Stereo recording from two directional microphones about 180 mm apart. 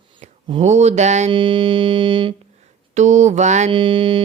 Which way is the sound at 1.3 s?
30° right (ahead or behind).